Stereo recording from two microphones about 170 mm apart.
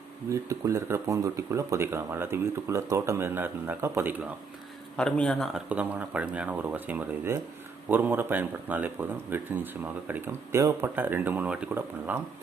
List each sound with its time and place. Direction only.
0.3 s speech: 20° right (ahead or behind)
4.9 s speech: 5° left (ahead or behind)
5.6 s speech: 10° right (ahead or behind)